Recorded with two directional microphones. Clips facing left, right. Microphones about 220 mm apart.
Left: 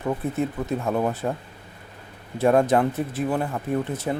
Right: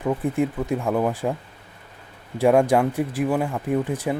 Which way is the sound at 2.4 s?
15° right (ahead or behind).